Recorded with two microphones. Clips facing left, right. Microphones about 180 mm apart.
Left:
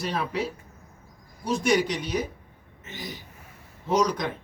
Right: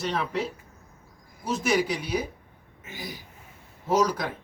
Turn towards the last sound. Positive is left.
turn(degrees=-5)  # may be behind; listen again after turning